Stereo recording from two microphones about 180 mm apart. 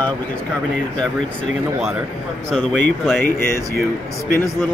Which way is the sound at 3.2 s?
50° left (ahead or behind).